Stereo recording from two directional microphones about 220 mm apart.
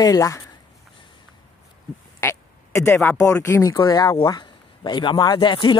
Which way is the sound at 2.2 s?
10° left (ahead or behind).